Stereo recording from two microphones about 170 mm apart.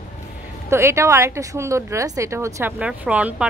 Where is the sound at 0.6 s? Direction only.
15° right (ahead or behind).